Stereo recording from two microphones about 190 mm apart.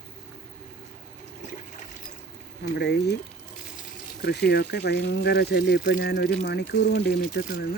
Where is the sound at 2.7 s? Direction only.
60° left (ahead or behind).